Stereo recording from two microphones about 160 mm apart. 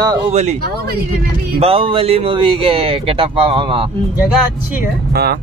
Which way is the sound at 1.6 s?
35° right (ahead or behind).